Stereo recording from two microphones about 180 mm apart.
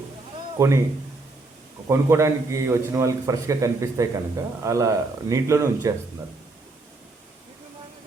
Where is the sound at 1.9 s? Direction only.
15° right (ahead or behind).